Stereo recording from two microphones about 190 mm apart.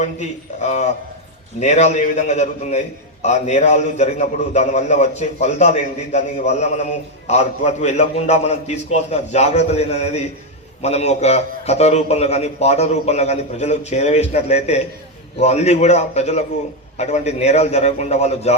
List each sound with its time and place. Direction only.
0.0 s a man's voice: 40° left (ahead or behind)